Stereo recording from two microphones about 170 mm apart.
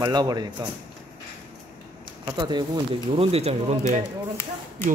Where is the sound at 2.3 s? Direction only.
25° right (ahead or behind); by 4.0 s 40° right (ahead or behind).